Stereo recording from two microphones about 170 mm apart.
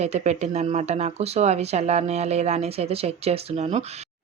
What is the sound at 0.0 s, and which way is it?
Speech, 40° right (ahead or behind).